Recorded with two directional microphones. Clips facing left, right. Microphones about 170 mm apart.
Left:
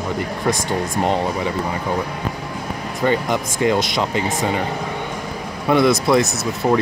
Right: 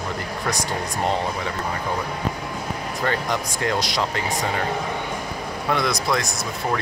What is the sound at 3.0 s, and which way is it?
Speech, 5° left (ahead or behind).